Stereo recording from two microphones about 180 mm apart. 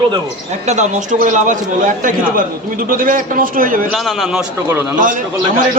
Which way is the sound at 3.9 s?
Centre (ahead or behind).